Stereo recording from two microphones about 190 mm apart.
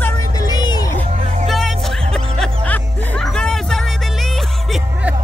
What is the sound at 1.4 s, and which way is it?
Music, centre (ahead or behind).